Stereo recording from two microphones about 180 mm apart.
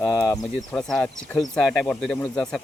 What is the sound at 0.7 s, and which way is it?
Speech, 5° left (ahead or behind).